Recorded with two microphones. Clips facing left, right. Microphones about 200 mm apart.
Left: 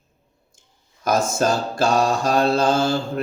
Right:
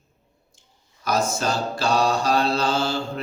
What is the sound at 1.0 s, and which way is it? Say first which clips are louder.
Speech: left 4 dB; 50° left (ahead or behind).